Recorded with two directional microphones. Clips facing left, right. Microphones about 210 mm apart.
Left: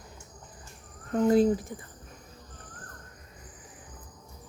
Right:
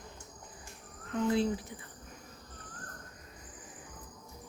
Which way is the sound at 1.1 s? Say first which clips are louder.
Left 8 dB; 45° left (ahead or behind).